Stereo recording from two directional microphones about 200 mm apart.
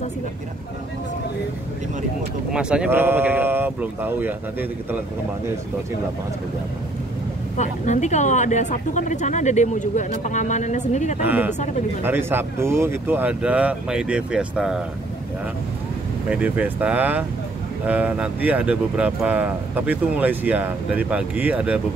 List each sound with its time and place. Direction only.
2.5 s speech: 5° right (ahead or behind)
7.5 s speech: 35° left (ahead or behind)
11.2 s speech: 10° right (ahead or behind)
16.3 s speech: 5° right (ahead or behind)